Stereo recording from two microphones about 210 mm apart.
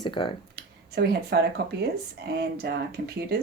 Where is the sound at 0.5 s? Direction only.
50° right (ahead or behind).